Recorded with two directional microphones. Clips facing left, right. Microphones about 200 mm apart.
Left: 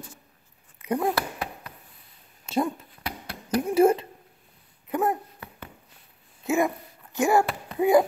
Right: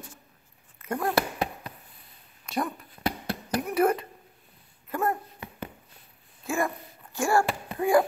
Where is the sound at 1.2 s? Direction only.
20° right (ahead or behind).